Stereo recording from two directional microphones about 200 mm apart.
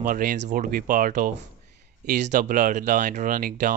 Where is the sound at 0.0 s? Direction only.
45° right (ahead or behind).